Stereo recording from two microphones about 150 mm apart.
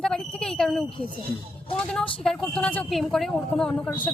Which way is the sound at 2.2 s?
5° left (ahead or behind).